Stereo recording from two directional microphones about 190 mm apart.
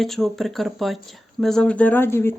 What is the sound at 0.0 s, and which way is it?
Speech, centre (ahead or behind).